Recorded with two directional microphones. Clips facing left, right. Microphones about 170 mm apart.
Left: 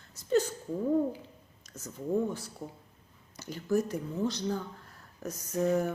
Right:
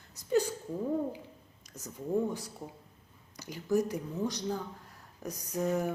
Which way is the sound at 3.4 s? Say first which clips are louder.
Even; 15° right (ahead or behind).